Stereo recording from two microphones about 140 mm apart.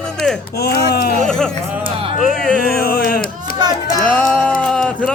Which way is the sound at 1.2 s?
5° left (ahead or behind).